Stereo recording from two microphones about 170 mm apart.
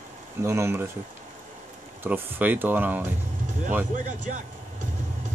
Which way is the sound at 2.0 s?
10° right (ahead or behind).